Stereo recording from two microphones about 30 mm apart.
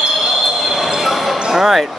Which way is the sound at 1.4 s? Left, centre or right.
Centre.